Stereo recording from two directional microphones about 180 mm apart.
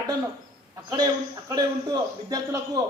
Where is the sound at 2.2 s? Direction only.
20° right (ahead or behind).